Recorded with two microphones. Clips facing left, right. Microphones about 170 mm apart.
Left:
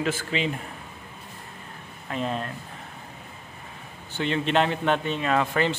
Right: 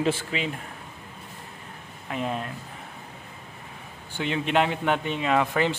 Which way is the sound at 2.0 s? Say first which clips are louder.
Left 1 dB; 15° right (ahead or behind).